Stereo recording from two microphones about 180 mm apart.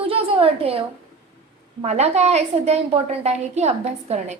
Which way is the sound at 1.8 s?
35° right (ahead or behind).